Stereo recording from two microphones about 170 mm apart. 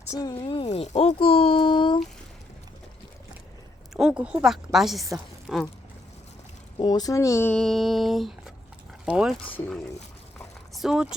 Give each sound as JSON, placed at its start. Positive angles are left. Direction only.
{"t": 0.1, "sound": "speech", "side_deg": 20}
{"t": 0.3, "sound": "speech", "side_deg": 35}
{"t": 3.9, "sound": "a woman's voice", "side_deg": -5}
{"t": 6.7, "sound": "speech", "side_deg": 25}
{"t": 7.5, "sound": "a woman's voice", "side_deg": 0}
{"t": 10.8, "sound": "speech", "side_deg": -5}